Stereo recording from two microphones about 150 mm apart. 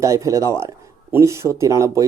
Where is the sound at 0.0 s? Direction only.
20° right (ahead or behind).